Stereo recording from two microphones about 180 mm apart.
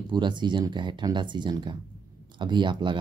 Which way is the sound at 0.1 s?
25° right (ahead or behind).